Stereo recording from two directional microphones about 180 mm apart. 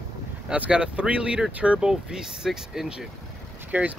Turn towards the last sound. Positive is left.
turn(degrees=-10)  # may be behind; listen again after turning